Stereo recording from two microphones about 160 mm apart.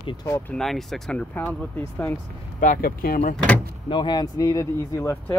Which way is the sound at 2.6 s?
60° left (ahead or behind).